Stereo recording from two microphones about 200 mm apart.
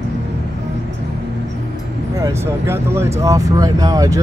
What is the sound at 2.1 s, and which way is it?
Speech, 15° right (ahead or behind).